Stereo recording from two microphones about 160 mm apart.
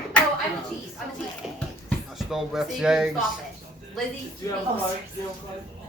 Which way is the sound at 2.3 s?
5° right (ahead or behind).